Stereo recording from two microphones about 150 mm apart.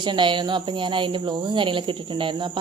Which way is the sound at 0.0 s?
30° right (ahead or behind).